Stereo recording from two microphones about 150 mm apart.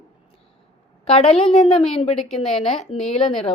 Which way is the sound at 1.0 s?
40° left (ahead or behind).